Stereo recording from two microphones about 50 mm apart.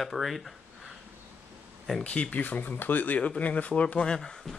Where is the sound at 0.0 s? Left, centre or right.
Centre.